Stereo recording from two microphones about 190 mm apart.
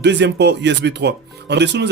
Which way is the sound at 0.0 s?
65° right (ahead or behind).